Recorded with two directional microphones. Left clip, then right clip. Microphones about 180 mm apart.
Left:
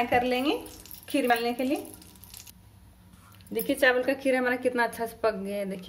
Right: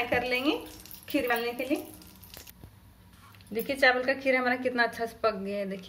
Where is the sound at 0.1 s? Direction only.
25° left (ahead or behind).